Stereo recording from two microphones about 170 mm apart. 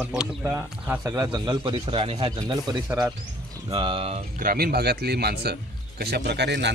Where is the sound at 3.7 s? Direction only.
30° right (ahead or behind).